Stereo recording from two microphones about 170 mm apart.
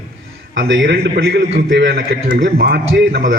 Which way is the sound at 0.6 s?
65° right (ahead or behind).